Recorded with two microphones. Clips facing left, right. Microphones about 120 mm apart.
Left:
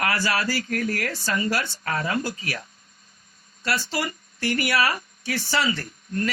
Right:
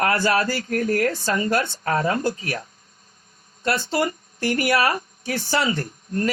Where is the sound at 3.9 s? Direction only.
45° right (ahead or behind).